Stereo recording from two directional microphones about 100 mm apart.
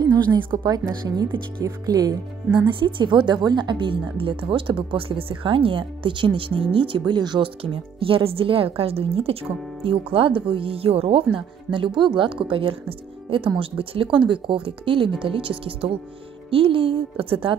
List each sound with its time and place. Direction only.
0.0 s a woman's voice: 45° right (ahead or behind)
2.8 s speech: 55° right (ahead or behind); by 11.2 s 80° right
11.3 s speech: 60° right (ahead or behind)